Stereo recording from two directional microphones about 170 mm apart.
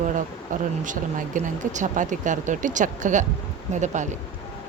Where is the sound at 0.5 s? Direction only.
50° right (ahead or behind).